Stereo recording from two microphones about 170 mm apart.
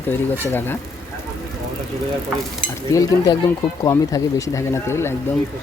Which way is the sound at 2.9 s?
20° left (ahead or behind).